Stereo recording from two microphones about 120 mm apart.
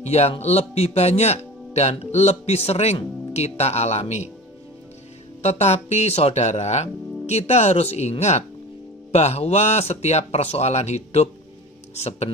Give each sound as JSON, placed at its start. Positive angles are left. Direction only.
{"t": 0.0, "sound": "speech", "side_deg": 60}
{"t": 5.4, "sound": "speech", "side_deg": 65}